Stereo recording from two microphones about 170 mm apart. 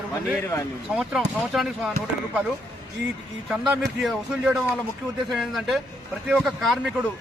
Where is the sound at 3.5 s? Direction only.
Centre (ahead or behind).